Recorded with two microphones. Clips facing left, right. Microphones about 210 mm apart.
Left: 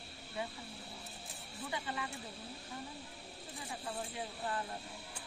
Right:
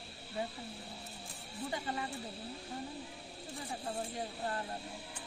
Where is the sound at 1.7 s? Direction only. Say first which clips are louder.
Right 2 dB; 40° right (ahead or behind).